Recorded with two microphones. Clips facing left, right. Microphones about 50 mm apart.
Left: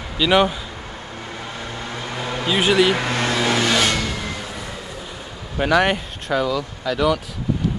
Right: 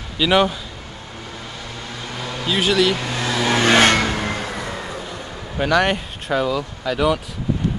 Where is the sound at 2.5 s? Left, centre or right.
Centre.